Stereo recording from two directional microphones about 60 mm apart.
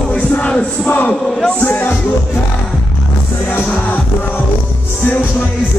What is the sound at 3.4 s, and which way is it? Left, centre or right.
Music, left.